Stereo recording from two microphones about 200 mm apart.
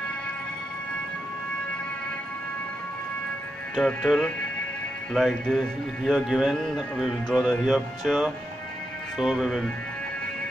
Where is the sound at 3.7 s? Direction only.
Centre (ahead or behind).